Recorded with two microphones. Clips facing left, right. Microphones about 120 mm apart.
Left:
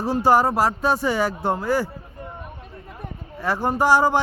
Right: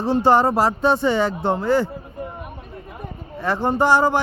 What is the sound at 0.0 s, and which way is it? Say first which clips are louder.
A man's voice: right 2 dB; 5° left (ahead or behind).